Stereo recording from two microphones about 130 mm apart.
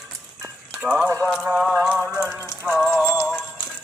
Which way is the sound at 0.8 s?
10° right (ahead or behind).